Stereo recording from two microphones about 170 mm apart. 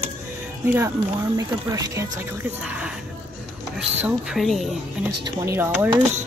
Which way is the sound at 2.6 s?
5° right (ahead or behind).